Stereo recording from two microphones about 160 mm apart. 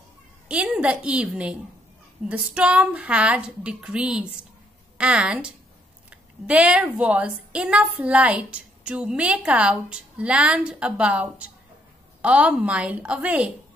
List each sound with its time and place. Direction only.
0.5 s a woman's voice: 5° right (ahead or behind)